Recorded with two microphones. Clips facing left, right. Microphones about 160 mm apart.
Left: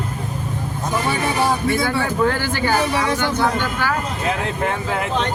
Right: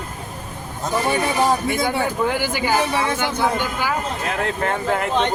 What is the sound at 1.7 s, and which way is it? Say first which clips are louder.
A man's voice: left 1 dB; 15° right (ahead or behind).